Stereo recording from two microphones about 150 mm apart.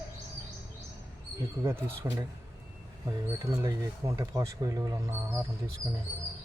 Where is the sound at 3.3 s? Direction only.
20° right (ahead or behind).